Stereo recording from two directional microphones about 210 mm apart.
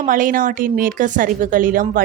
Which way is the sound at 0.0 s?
40° right (ahead or behind).